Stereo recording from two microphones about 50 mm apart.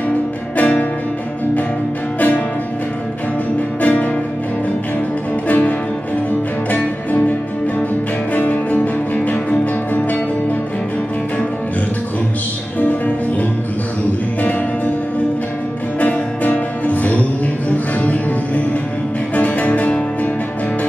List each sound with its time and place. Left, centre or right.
0.6 s music: left
3.8 s music: left
5.5 s music: left
8.4 s music: left
12.8 s music: left
16.0 s music: left